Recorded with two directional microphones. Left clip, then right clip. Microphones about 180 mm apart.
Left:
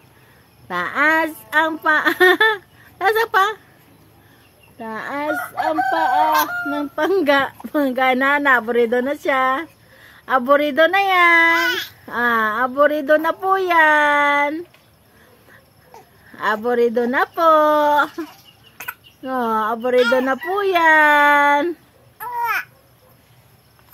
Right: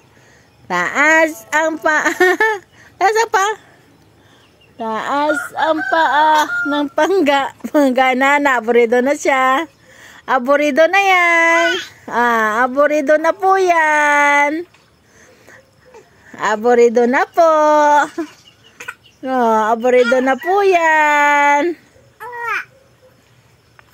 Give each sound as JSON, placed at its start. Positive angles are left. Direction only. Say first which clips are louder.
{"t": 0.7, "sound": "speech", "louder": "right 4 dB", "side_deg": -30}
{"t": 4.7, "sound": "speech", "louder": "right 8 dB", "side_deg": -30}
{"t": 16.3, "sound": "speech", "louder": "right 5 dB", "side_deg": -35}
{"t": 19.2, "sound": "speech", "louder": "right 6 dB", "side_deg": -25}